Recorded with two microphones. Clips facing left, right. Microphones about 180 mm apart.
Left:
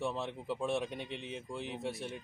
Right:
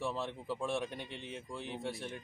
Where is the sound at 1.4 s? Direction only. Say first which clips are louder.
Even; centre (ahead or behind).